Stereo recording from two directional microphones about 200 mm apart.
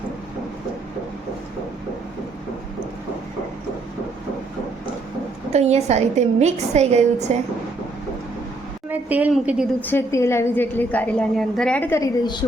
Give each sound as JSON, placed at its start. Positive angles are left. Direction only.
{"t": 5.5, "sound": "a woman's voice", "side_deg": -35}
{"t": 8.9, "sound": "speech", "side_deg": -10}
{"t": 9.8, "sound": "a woman's voice", "side_deg": 10}